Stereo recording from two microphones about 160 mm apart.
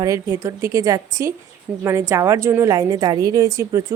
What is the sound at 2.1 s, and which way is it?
A woman's voice, 15° right (ahead or behind).